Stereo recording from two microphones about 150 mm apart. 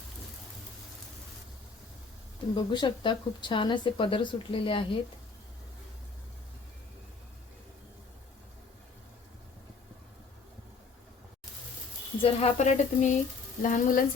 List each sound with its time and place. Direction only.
2.6 s speech: 30° left (ahead or behind)
12.2 s speech: 45° left (ahead or behind)
13.6 s sizzle: 60° left (ahead or behind)